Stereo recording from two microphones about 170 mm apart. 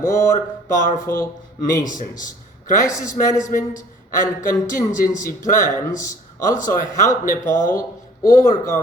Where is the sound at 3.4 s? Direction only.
45° left (ahead or behind).